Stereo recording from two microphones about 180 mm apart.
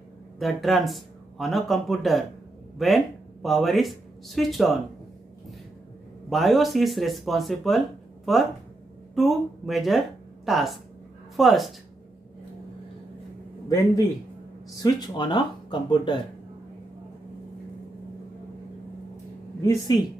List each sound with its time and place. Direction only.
0.4 s speech: centre (ahead or behind)
6.3 s speech: centre (ahead or behind)
14.8 s speech: 25° left (ahead or behind)
19.6 s speech: 20° left (ahead or behind)